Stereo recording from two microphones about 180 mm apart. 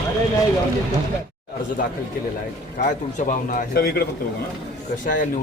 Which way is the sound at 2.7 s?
45° left (ahead or behind).